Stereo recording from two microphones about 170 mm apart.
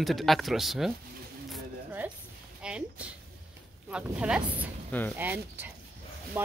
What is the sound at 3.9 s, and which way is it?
Speech, 5° right (ahead or behind).